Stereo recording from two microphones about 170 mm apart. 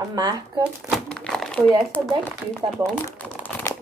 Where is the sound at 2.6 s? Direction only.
30° right (ahead or behind).